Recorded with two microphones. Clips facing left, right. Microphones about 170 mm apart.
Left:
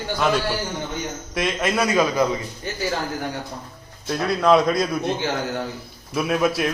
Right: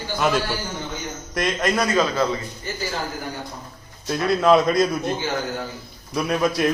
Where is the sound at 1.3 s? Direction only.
Centre (ahead or behind).